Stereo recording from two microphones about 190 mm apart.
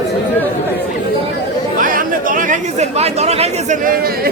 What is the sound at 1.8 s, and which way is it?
Chatter, 45° right (ahead or behind).